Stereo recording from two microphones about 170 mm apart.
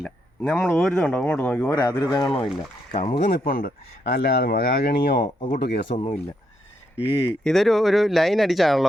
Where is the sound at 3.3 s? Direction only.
60° left (ahead or behind).